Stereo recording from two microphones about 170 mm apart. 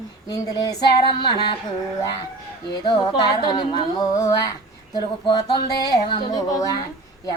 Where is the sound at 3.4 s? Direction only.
25° left (ahead or behind).